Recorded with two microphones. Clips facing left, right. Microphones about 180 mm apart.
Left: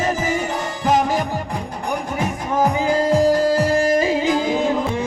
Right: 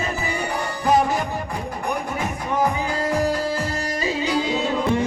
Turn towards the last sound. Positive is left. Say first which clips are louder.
# left 8 dB
turn(degrees=90)